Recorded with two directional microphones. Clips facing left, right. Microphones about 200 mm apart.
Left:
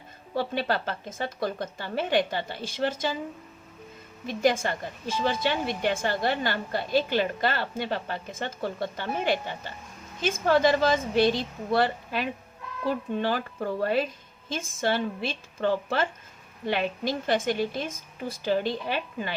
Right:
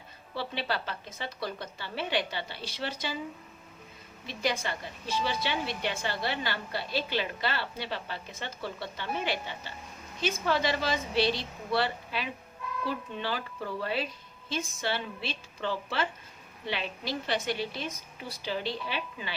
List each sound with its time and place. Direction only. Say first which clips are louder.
0.3 s a woman's voice: left 6 dB; 45° left (ahead or behind)
4.3 s a woman's voice: left 7 dB; 50° left (ahead or behind)